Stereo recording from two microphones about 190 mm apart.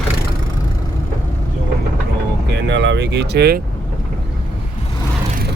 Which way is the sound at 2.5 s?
70° right (ahead or behind).